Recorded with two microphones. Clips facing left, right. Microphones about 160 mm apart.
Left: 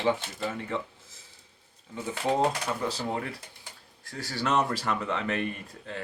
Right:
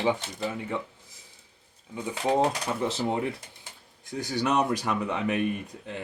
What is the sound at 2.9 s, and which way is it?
Speech, 20° right (ahead or behind).